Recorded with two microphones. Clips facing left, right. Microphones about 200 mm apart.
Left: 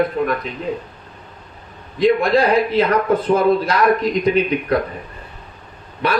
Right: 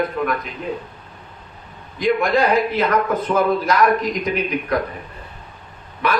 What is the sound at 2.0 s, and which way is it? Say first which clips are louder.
Speech: left 3 dB; 30° left (ahead or behind).